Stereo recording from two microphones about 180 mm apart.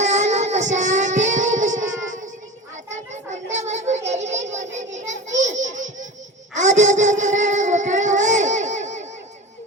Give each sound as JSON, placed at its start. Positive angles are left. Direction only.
{"t": 0.0, "sound": "child singing", "side_deg": -40}
{"t": 2.9, "sound": "children playing", "side_deg": -40}
{"t": 5.4, "sound": "a sound", "side_deg": -40}
{"t": 6.5, "sound": "child singing", "side_deg": -40}